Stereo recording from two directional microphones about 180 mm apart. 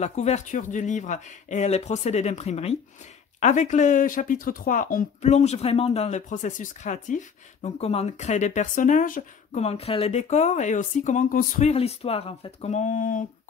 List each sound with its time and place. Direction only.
0.0 s speech: 40° left (ahead or behind)